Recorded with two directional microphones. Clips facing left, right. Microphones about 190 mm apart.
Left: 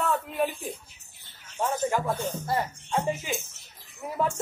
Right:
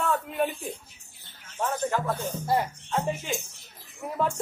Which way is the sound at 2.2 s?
10° right (ahead or behind).